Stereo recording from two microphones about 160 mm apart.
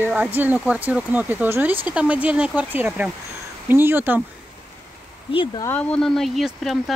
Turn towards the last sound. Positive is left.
turn(degrees=0)  # may be behind; listen again after turning